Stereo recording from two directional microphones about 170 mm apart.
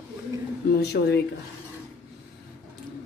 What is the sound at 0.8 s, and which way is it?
Speech, 70° left (ahead or behind).